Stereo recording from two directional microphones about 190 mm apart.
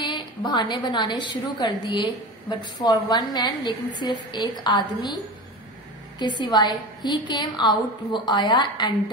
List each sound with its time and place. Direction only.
0.0 s a woman's voice: 25° left (ahead or behind)